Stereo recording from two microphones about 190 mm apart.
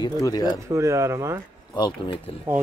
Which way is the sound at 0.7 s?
15° right (ahead or behind).